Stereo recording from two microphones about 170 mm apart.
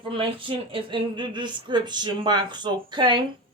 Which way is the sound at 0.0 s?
30° right (ahead or behind).